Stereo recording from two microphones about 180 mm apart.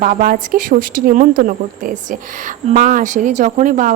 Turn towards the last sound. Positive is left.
turn(degrees=-50)  # may be behind; listen again after turning